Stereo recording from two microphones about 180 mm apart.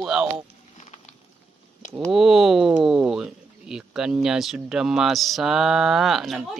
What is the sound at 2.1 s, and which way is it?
Speech, centre (ahead or behind).